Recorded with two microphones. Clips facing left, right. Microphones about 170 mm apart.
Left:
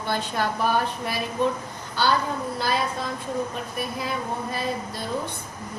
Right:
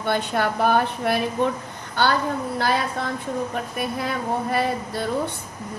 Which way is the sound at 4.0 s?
60° right (ahead or behind).